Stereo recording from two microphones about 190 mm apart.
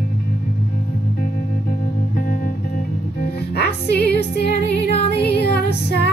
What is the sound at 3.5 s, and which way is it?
Music, 60° left (ahead or behind).